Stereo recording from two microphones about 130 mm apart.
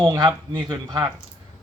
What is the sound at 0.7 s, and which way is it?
Speech, 25° right (ahead or behind).